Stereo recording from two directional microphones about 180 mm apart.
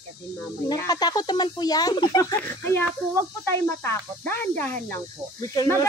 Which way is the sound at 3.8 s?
10° left (ahead or behind).